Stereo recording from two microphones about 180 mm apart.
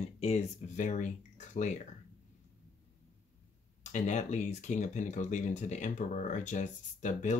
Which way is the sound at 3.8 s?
40° left (ahead or behind).